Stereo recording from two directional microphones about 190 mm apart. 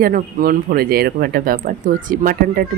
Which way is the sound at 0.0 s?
50° right (ahead or behind).